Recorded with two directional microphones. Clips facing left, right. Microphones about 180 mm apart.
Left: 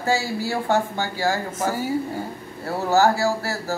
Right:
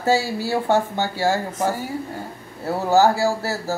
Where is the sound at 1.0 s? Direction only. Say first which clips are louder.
Right 2 dB; 25° right (ahead or behind).